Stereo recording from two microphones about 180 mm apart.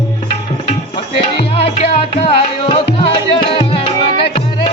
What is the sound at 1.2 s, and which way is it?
Music, 35° left (ahead or behind).